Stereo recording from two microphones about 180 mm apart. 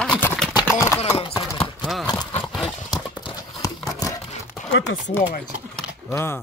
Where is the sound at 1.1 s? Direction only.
25° left (ahead or behind).